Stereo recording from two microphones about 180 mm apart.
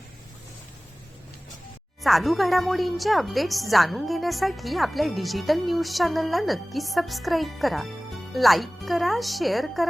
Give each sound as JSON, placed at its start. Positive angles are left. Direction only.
{"t": 2.0, "sound": "speech", "side_deg": 0}